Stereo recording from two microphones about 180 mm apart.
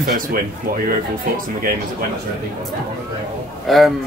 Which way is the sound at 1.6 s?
50° right (ahead or behind).